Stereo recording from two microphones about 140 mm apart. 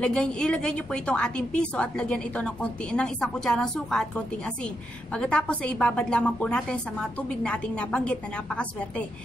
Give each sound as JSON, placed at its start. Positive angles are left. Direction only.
{"t": 0.0, "sound": "a woman's voice", "side_deg": 5}